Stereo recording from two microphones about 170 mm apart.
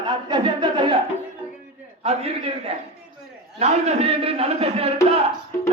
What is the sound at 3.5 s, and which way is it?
A man's voice, 40° right (ahead or behind).